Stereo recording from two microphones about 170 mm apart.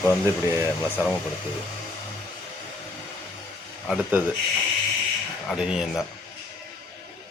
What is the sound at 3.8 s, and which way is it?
Speech, 5° right (ahead or behind).